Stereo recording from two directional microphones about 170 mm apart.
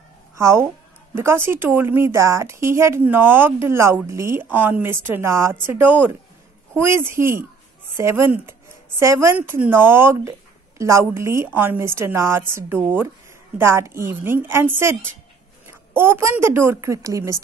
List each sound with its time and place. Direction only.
0.4 s a woman's voice: 15° right (ahead or behind)